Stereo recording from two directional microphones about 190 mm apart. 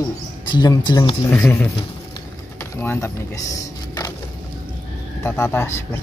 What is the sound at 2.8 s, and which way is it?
Speech, 15° left (ahead or behind).